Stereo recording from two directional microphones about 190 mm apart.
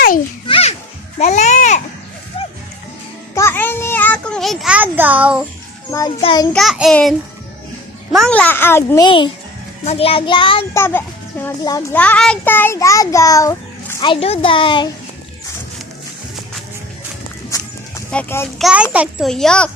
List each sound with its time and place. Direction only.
0.4 s a sound: 30° left (ahead or behind)
3.3 s a sound: 10° left (ahead or behind); by 5.4 s 5° right (ahead or behind)
5.9 s child singing: 20° left (ahead or behind)
6.5 s a child's voice: centre (ahead or behind)
9.0 s child singing: 25° left (ahead or behind)
10.8 s a child's voice: 10° left (ahead or behind)
14.0 s child singing: 30° left (ahead or behind)
17.5 s a sound: 15° left (ahead or behind)
18.1 s a child's voice: 10° left (ahead or behind)
18.6 s a child's voice: 5° right (ahead or behind)